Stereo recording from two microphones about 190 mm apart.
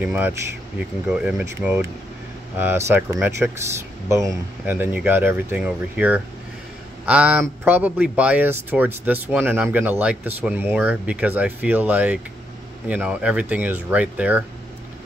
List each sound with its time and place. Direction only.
0.0 s speech: 10° right (ahead or behind)
4.6 s speech: 10° right (ahead or behind)